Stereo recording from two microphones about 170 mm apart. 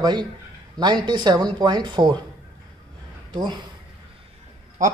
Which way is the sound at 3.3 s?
25° right (ahead or behind).